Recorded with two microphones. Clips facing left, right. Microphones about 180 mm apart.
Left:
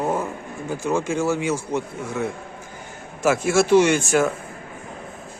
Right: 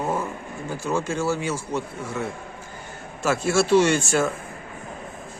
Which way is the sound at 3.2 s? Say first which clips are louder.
Left 3 dB; 15° left (ahead or behind).